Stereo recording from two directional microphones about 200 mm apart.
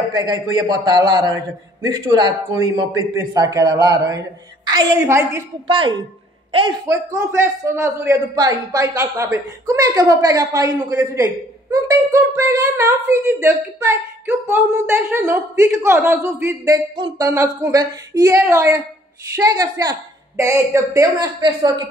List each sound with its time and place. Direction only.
0.2 s a man's voice: 20° right (ahead or behind)
5.7 s a man's voice: 25° right (ahead or behind)